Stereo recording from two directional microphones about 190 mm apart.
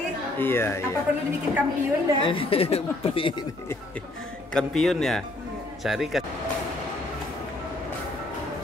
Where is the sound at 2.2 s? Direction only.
30° left (ahead or behind).